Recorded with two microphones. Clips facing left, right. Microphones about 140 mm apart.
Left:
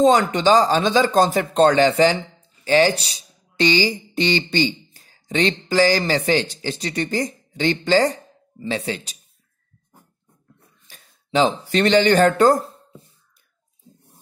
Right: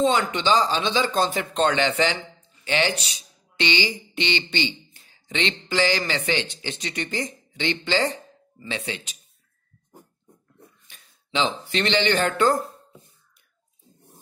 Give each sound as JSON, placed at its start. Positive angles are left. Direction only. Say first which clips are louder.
{"t": 0.3, "sound": "a man's voice", "louder": "left 6 dB", "side_deg": 40}
{"t": 10.9, "sound": "speech", "louder": "left 7 dB", "side_deg": 40}